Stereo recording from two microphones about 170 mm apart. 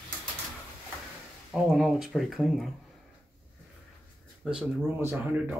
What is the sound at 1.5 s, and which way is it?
Speech, centre (ahead or behind).